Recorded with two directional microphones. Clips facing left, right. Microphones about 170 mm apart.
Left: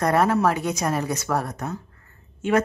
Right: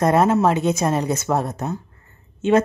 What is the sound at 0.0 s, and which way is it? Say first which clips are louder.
A woman's voice: right 3 dB; 20° right (ahead or behind).